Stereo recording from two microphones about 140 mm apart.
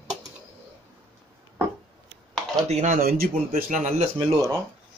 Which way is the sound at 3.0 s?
90° right.